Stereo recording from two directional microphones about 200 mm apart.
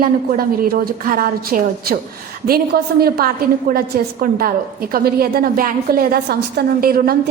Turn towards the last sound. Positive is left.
turn(degrees=-45)  # may be behind; listen again after turning